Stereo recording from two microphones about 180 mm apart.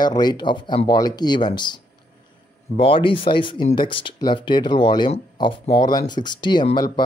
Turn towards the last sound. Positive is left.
turn(degrees=25)  # may be behind; listen again after turning